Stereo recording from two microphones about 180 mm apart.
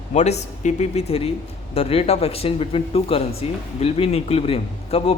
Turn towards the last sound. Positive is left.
turn(degrees=35)  # may be behind; listen again after turning